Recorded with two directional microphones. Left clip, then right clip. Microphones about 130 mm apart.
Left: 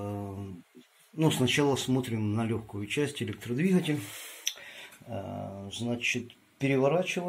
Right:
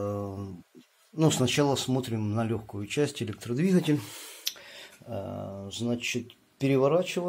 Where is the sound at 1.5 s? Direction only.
25° right (ahead or behind).